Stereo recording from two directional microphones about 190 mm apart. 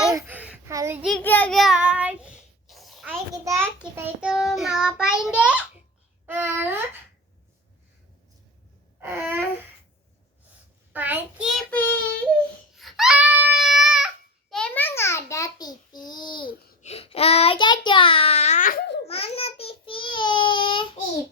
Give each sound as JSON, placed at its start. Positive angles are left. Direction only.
{"t": 0.1, "sound": "a sound", "side_deg": -15}
{"t": 1.2, "sound": "child singing", "side_deg": 10}
{"t": 3.4, "sound": "child singing", "side_deg": -15}
{"t": 6.2, "sound": "a sound", "side_deg": -10}
{"t": 9.0, "sound": "a sound", "side_deg": -10}
{"t": 10.9, "sound": "child singing", "side_deg": -10}
{"t": 12.7, "sound": "crying", "side_deg": 0}
{"t": 14.5, "sound": "child singing", "side_deg": 5}
{"t": 19.0, "sound": "child singing", "side_deg": 30}